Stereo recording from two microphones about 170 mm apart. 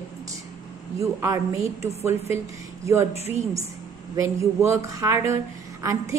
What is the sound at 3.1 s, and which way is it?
Speech, 40° left (ahead or behind).